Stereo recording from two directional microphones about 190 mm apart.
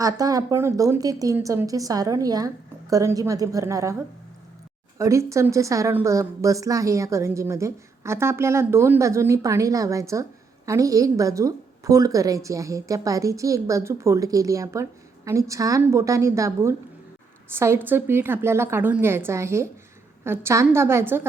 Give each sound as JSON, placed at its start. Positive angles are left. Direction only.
{"t": 0.0, "sound": "a woman's voice", "side_deg": -20}